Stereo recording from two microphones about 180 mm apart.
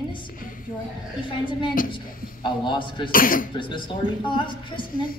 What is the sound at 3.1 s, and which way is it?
Speech, 50° left (ahead or behind).